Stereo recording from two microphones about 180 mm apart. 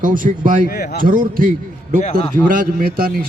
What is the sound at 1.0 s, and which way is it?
Speech, 50° right (ahead or behind).